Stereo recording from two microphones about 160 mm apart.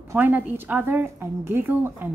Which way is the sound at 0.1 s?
10° right (ahead or behind).